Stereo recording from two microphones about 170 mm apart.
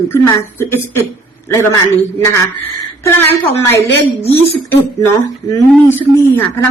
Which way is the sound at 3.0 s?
15° left (ahead or behind).